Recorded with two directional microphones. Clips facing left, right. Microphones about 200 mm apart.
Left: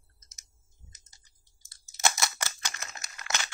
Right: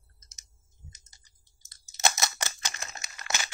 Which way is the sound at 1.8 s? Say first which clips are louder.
Right 1 dB; 20° right (ahead or behind).